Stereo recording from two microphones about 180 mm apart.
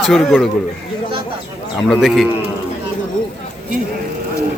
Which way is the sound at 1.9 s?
Centre (ahead or behind).